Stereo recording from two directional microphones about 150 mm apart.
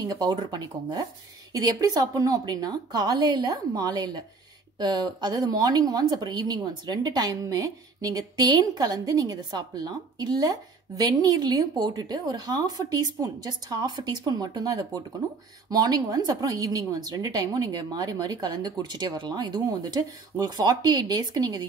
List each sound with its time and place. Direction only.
0.0 s a woman's voice: 25° right (ahead or behind)